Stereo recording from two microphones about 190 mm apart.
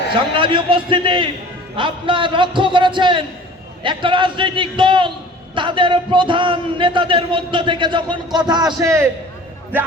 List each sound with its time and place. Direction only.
0.3 s a man's voice: 25° right (ahead or behind)